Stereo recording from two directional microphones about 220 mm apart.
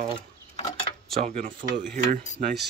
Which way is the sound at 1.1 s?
30° right (ahead or behind).